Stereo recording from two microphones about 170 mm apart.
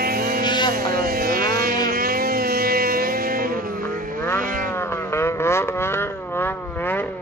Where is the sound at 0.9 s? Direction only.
60° right (ahead or behind).